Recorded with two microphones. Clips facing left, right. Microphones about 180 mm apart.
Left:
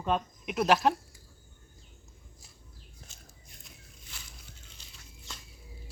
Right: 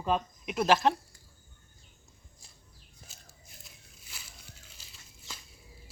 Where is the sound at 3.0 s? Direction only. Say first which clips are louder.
Right 2 dB; 5° right (ahead or behind).